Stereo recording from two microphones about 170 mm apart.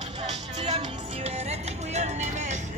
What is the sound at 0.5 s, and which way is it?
Music, 40° right (ahead or behind).